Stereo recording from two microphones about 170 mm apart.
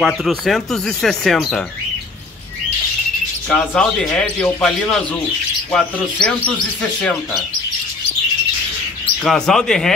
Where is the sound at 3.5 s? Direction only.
5° left (ahead or behind).